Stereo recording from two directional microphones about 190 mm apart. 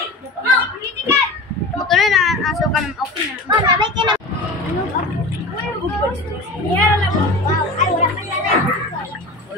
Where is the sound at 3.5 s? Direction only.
25° right (ahead or behind).